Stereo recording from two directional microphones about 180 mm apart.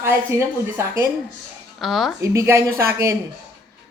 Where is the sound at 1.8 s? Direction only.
Centre (ahead or behind).